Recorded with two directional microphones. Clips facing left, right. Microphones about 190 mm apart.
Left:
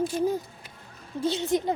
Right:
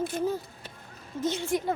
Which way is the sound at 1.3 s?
20° left (ahead or behind).